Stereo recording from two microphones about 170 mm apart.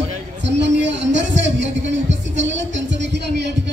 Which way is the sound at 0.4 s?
90° right.